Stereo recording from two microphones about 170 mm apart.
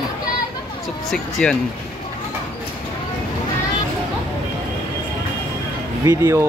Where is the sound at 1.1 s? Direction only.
Centre (ahead or behind).